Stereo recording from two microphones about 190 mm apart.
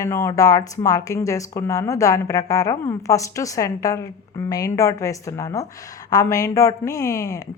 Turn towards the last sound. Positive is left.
turn(degrees=15)  # may be behind; listen again after turning